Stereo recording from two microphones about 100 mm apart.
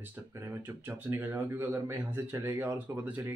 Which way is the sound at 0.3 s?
25° right (ahead or behind).